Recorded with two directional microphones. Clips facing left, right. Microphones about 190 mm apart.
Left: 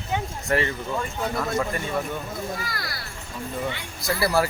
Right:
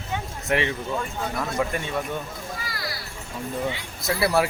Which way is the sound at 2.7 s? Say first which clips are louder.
Right 1 dB; 50° left (ahead or behind).